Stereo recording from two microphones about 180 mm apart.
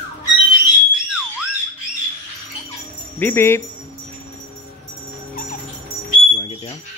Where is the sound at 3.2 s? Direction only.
10° left (ahead or behind).